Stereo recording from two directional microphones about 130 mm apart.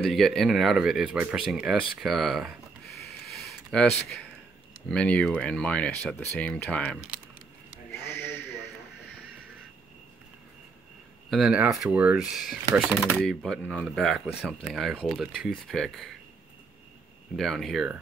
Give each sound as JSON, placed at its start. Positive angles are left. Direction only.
{"t": 0.0, "sound": "speech", "side_deg": 0}
{"t": 3.3, "sound": "a sound", "side_deg": 0}
{"t": 4.8, "sound": "speech", "side_deg": 10}
{"t": 7.9, "sound": "a sound", "side_deg": 20}
{"t": 11.2, "sound": "speech", "side_deg": 0}
{"t": 13.2, "sound": "speech", "side_deg": 5}
{"t": 17.4, "sound": "speech", "side_deg": 0}